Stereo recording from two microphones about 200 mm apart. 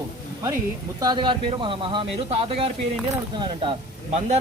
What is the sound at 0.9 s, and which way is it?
A man's voice, 20° right (ahead or behind).